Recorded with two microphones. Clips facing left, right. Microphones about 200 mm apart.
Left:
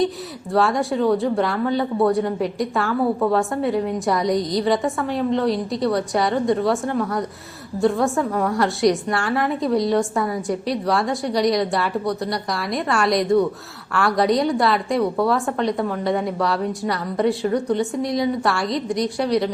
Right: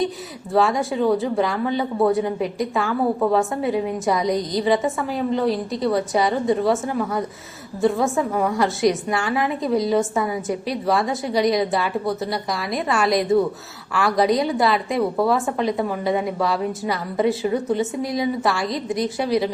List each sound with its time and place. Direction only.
0.5 s speech: centre (ahead or behind)